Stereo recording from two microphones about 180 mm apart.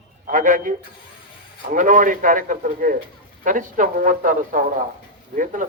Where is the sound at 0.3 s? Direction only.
45° right (ahead or behind).